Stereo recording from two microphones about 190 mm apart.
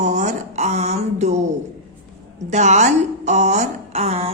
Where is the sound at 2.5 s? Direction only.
40° right (ahead or behind).